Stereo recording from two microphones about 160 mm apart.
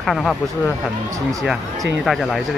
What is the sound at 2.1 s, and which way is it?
Speech, centre (ahead or behind).